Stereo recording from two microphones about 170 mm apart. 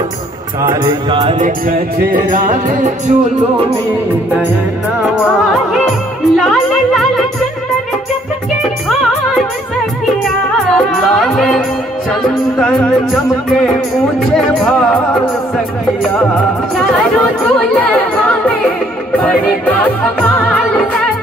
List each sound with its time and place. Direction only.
0.7 s music: 30° right (ahead or behind)
1.4 s music: 55° right (ahead or behind)
5.7 s music: centre (ahead or behind)
10.7 s music: centre (ahead or behind)
19.1 s music: 10° left (ahead or behind)